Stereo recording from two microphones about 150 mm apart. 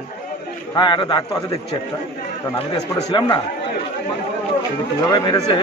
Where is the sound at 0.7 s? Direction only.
30° left (ahead or behind).